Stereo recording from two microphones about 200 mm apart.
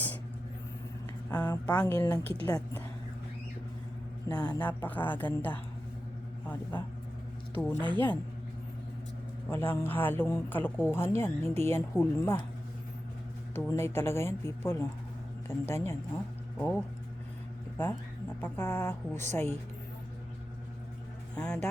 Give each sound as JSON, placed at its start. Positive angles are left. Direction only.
{"t": 1.7, "sound": "speech", "side_deg": 5}
{"t": 4.3, "sound": "speech", "side_deg": 20}
{"t": 4.6, "sound": "speech", "side_deg": 10}
{"t": 9.5, "sound": "speech", "side_deg": 10}
{"t": 13.5, "sound": "speech", "side_deg": 10}
{"t": 21.3, "sound": "speech", "side_deg": 5}